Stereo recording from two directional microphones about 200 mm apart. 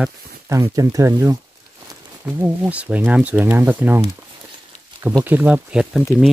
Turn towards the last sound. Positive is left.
turn(degrees=-5)  # may be behind; listen again after turning